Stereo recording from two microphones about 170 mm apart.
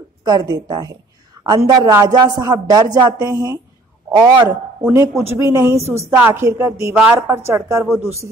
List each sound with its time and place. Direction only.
0.2 s a woman's voice: 20° right (ahead or behind)
5.8 s a woman's voice: 40° right (ahead or behind)
6.0 s speech: 15° right (ahead or behind)
7.0 s speech: 5° right (ahead or behind)